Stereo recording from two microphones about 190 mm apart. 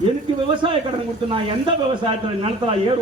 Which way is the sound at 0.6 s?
25° right (ahead or behind).